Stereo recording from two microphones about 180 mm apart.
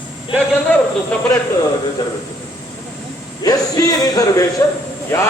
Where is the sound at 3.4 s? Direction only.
20° left (ahead or behind).